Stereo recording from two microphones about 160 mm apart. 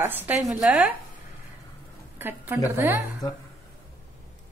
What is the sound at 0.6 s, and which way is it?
Speech, 5° right (ahead or behind).